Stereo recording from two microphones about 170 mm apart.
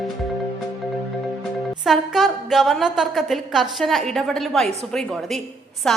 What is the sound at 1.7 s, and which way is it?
A woman's voice, 5° right (ahead or behind).